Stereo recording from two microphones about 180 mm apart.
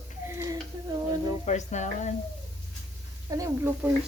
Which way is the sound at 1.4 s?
40° left (ahead or behind).